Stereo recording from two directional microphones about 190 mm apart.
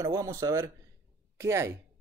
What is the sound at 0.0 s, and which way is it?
Speech, 15° right (ahead or behind).